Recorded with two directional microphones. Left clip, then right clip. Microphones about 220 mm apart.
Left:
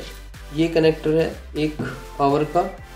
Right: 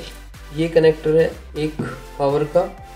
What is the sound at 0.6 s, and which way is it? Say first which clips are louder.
Speech: right 3 dB; 20° left (ahead or behind).